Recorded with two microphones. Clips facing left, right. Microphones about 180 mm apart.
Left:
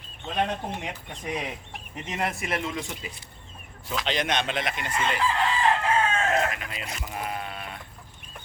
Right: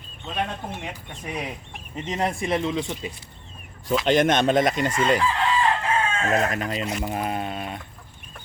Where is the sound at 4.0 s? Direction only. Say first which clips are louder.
Right 8 dB; 50° right (ahead or behind).